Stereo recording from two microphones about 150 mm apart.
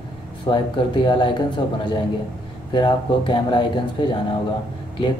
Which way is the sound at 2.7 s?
30° left (ahead or behind).